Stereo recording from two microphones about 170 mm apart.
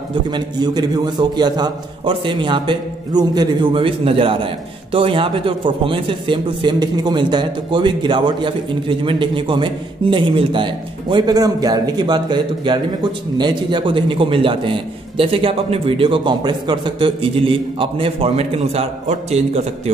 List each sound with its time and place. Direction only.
0.1 s a man's voice: 25° right (ahead or behind)